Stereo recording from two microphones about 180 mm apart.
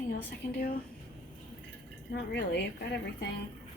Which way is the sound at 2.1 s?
70° left (ahead or behind).